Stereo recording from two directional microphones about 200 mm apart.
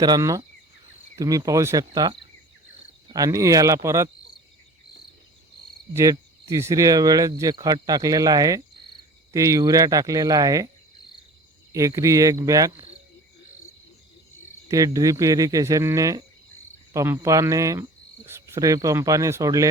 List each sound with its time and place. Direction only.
0.0 s speech: 20° right (ahead or behind)
5.9 s speech: 15° right (ahead or behind)
11.7 s speech: 15° right (ahead or behind)
12.7 s cricket: 30° right (ahead or behind)
14.7 s speech: 15° right (ahead or behind)